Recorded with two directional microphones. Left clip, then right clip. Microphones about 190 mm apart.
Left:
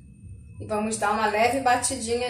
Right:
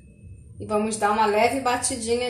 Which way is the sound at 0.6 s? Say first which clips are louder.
Right 3 dB; 35° right (ahead or behind).